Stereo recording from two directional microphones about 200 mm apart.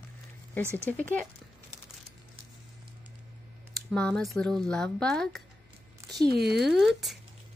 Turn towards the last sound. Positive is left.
turn(degrees=0)  # may be behind; listen again after turning